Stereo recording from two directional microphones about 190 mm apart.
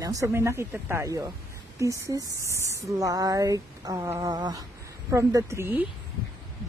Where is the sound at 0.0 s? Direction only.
15° right (ahead or behind).